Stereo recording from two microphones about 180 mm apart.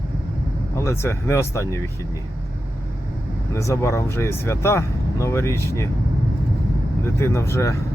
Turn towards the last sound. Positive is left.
turn(degrees=15)  # may be behind; listen again after turning